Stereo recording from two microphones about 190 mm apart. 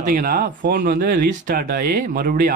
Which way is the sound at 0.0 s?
50° right (ahead or behind).